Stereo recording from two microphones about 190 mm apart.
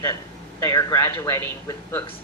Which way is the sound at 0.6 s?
15° left (ahead or behind).